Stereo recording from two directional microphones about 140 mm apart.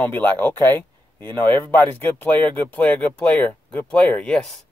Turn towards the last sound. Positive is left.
turn(degrees=5)  # may be behind; listen again after turning